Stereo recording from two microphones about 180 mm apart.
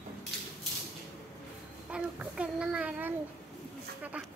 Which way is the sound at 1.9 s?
5° right (ahead or behind).